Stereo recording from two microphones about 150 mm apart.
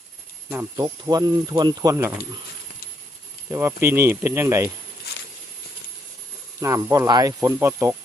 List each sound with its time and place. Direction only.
0.5 s speech: 20° right (ahead or behind)
3.5 s speech: 15° right (ahead or behind)
6.6 s speech: 20° right (ahead or behind)